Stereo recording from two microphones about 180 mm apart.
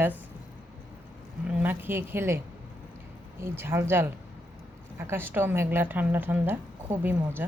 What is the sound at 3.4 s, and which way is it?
A woman's voice, 15° right (ahead or behind).